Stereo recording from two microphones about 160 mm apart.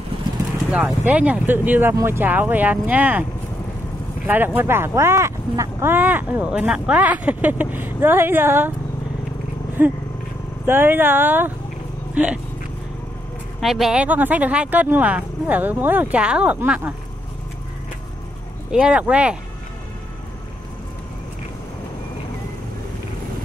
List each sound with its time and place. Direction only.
0.7 s speech: 5° right (ahead or behind)
4.6 s speech: 15° right (ahead or behind)
9.8 s speech: 10° right (ahead or behind)
13.6 s speech: centre (ahead or behind)
18.7 s speech: 5° right (ahead or behind)